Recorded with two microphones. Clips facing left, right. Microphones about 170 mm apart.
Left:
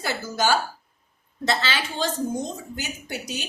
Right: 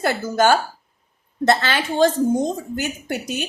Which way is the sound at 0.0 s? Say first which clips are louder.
Right 7 dB; 55° right (ahead or behind).